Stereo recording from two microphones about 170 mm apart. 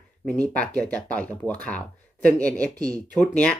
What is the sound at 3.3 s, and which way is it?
Speech, 5° left (ahead or behind).